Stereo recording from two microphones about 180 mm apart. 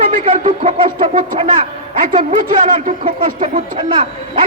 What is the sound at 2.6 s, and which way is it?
Speech, 45° right (ahead or behind).